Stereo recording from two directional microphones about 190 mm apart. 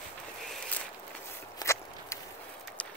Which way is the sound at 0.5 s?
5° left (ahead or behind).